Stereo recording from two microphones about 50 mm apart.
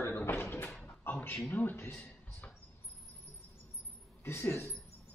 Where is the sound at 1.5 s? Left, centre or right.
Left.